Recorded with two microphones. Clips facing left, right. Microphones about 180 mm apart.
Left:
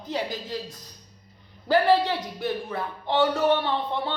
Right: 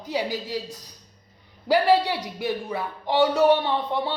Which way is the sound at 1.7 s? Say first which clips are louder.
Right 1 dB; 10° right (ahead or behind).